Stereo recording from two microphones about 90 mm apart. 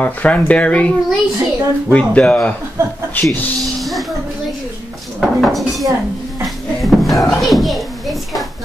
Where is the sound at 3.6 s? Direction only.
Centre (ahead or behind).